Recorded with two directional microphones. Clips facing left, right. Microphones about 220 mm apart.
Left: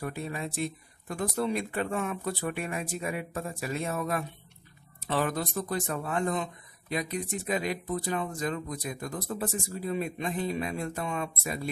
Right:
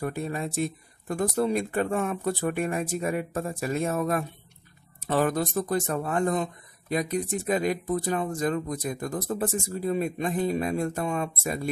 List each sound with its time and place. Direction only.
0.0 s speech: 45° right (ahead or behind)